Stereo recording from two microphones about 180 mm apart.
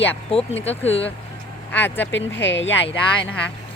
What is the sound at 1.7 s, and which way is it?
Speech, 10° left (ahead or behind).